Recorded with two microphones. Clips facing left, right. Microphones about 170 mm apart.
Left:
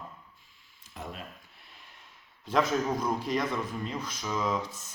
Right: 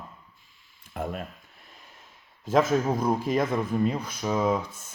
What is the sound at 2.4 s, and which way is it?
Speech, 45° right (ahead or behind).